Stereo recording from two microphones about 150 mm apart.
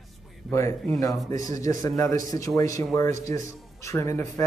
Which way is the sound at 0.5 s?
20° left (ahead or behind).